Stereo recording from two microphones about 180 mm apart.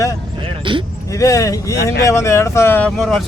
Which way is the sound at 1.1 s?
20° left (ahead or behind).